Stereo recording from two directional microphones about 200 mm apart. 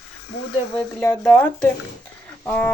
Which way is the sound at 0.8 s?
10° left (ahead or behind).